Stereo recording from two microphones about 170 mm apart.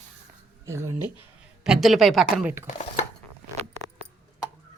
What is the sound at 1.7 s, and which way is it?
Speech, centre (ahead or behind).